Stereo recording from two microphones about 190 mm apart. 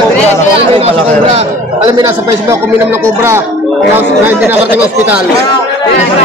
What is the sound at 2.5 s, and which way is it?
Speech, 10° right (ahead or behind).